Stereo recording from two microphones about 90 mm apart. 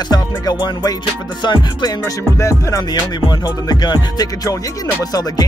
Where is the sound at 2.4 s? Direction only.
35° left (ahead or behind).